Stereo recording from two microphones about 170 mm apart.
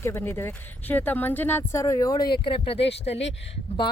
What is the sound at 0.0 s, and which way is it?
Speech, 15° left (ahead or behind).